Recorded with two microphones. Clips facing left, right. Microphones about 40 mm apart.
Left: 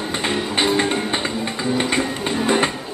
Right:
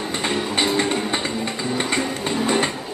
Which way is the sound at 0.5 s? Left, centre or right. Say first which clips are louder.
Left 3 dB; left.